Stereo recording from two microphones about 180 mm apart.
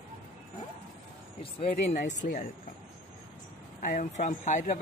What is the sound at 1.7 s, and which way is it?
Speech, 45° left (ahead or behind).